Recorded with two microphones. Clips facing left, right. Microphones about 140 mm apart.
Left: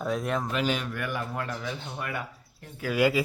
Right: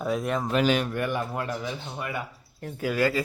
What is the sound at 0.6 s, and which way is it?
Speech, 60° right (ahead or behind).